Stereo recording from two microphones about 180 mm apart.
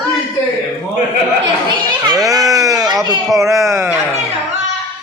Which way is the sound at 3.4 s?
15° right (ahead or behind).